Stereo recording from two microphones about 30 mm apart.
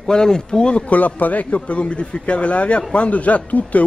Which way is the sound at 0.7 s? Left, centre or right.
Left.